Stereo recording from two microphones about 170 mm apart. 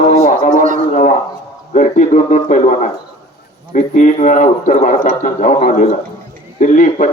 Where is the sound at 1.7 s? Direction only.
45° left (ahead or behind).